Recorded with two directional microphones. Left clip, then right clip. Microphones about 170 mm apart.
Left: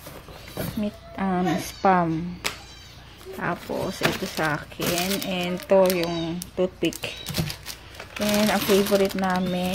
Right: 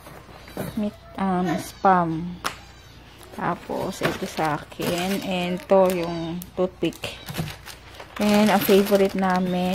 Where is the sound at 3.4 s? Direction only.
Centre (ahead or behind).